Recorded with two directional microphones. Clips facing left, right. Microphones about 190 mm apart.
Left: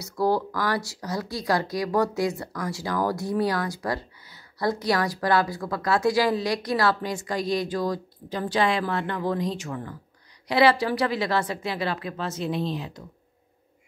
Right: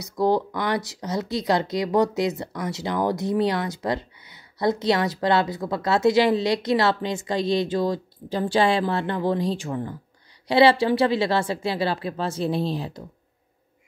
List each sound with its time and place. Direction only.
0.0 s a woman's voice: 20° right (ahead or behind)